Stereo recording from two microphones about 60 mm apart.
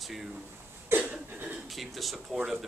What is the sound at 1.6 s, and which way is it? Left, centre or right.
Speech, centre.